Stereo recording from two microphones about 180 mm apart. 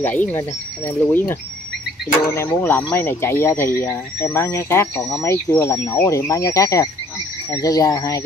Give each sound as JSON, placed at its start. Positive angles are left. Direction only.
{"t": 0.0, "sound": "speech", "side_deg": 10}